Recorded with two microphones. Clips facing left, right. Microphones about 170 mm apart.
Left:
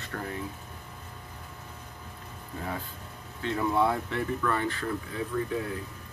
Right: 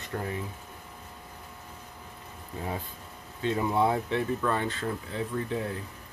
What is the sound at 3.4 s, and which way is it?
Speech, 20° right (ahead or behind).